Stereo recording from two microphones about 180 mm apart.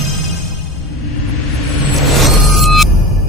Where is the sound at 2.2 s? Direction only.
Centre (ahead or behind).